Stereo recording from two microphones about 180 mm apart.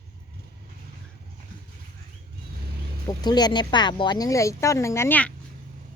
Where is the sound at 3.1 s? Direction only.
20° left (ahead or behind).